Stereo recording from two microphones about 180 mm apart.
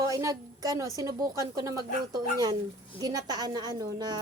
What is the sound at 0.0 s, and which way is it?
A woman's voice, 15° right (ahead or behind).